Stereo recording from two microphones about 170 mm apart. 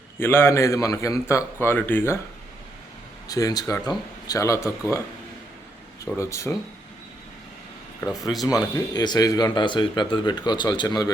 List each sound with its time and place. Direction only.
0.2 s a man's voice: 15° left (ahead or behind)
3.2 s speech: 20° left (ahead or behind)
6.1 s a man's voice: 20° left (ahead or behind)
8.2 s speech: centre (ahead or behind)
8.7 s speech: 20° left (ahead or behind)